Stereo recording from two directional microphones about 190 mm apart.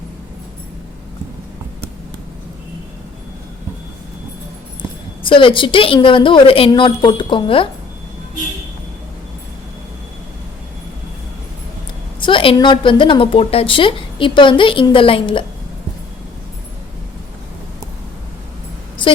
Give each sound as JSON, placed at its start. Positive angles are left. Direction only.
{"t": 5.2, "sound": "a woman's voice", "side_deg": 25}
{"t": 12.2, "sound": "a woman's voice", "side_deg": 25}